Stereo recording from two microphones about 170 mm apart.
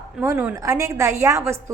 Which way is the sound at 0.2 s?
10° right (ahead or behind).